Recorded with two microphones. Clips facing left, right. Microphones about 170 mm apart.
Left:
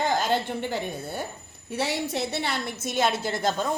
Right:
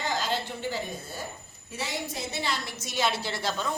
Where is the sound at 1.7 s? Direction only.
70° left (ahead or behind).